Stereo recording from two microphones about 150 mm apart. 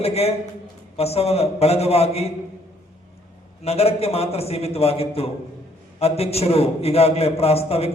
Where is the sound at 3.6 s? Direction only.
40° left (ahead or behind).